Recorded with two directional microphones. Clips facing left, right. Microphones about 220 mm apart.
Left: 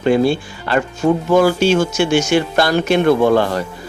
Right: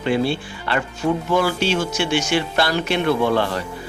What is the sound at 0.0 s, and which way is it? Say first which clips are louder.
Speech: left 6 dB; 45° left (ahead or behind).